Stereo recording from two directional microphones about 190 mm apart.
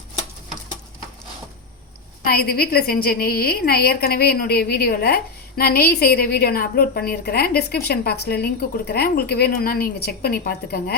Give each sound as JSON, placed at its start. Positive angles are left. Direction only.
{"t": 2.2, "sound": "a woman's voice", "side_deg": 55}